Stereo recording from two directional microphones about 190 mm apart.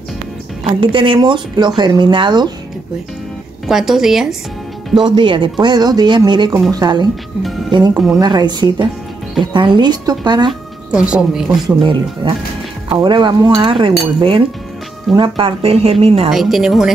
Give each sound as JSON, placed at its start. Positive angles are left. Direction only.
{"t": 0.7, "sound": "speech", "side_deg": -25}
{"t": 3.6, "sound": "a woman's voice", "side_deg": 0}
{"t": 4.9, "sound": "speech", "side_deg": -25}
{"t": 7.9, "sound": "a woman's voice", "side_deg": 0}
{"t": 8.2, "sound": "speech", "side_deg": -20}
{"t": 10.9, "sound": "a woman's voice", "side_deg": -5}
{"t": 11.6, "sound": "speech", "side_deg": -25}
{"t": 15.1, "sound": "speech", "side_deg": -25}
{"t": 16.3, "sound": "a woman's voice", "side_deg": 0}